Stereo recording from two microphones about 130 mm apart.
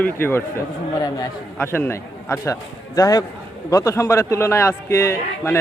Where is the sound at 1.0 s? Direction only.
30° left (ahead or behind).